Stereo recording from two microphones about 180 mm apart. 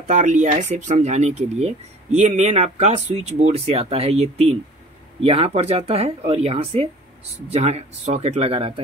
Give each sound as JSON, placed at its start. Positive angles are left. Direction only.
{"t": 0.0, "sound": "speech", "side_deg": -40}